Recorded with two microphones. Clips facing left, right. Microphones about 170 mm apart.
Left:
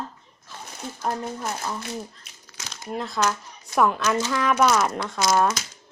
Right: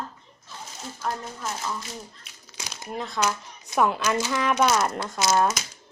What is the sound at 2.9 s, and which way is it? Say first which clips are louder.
Speech: left 2 dB; centre (ahead or behind).